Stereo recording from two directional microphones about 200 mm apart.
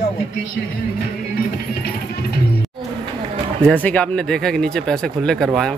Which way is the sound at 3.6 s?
5° left (ahead or behind).